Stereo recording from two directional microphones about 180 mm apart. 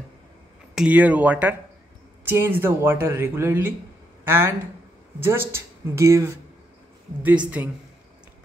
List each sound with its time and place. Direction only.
0.7 s speech: 5° right (ahead or behind)